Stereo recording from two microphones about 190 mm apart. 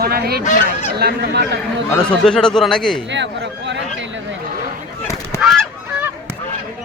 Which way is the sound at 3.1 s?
70° right (ahead or behind).